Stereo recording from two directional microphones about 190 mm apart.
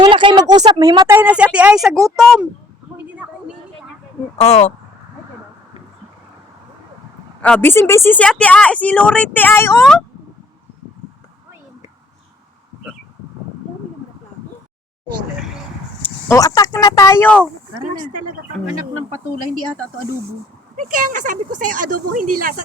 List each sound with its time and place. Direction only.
0.0 s speech: 25° right (ahead or behind); by 2.5 s centre (ahead or behind)
4.4 s speech: 35° left (ahead or behind)
7.4 s speech: 10° left (ahead or behind)
16.0 s speech: 10° left (ahead or behind)
18.1 s speech: 45° right (ahead or behind)
20.7 s speech: 45° right (ahead or behind)